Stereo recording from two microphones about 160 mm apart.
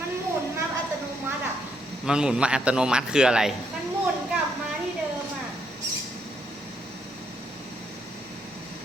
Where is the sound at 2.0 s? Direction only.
5° right (ahead or behind).